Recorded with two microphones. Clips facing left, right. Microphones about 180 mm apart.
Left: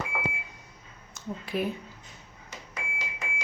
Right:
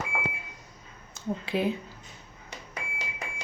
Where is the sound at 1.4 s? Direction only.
25° right (ahead or behind).